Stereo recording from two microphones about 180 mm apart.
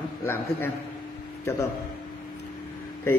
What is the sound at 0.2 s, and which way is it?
Speech, 15° left (ahead or behind).